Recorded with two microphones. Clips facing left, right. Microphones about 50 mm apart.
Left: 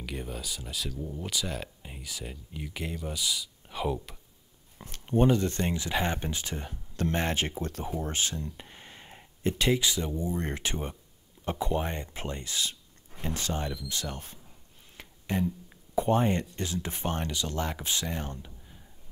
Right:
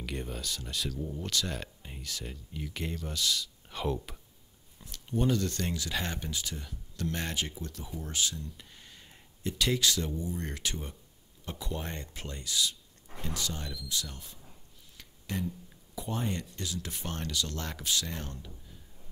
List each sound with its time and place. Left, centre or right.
0.0 s speech: centre
4.7 s speech: left
9.7 s speech: centre
10.1 s speech: left
15.0 s a sound: left
15.7 s speech: left